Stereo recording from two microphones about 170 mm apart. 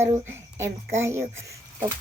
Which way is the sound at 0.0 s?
15° right (ahead or behind).